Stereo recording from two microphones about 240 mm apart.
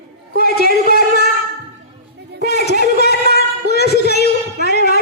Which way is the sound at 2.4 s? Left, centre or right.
Left.